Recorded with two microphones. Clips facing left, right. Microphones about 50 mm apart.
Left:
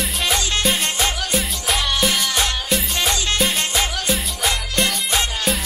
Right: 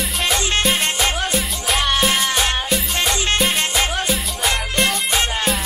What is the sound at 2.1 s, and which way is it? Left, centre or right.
Music, right.